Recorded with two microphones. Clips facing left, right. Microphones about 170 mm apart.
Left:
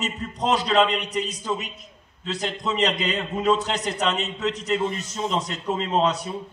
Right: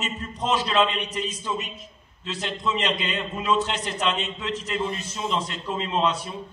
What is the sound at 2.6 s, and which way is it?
Speech, 40° left (ahead or behind).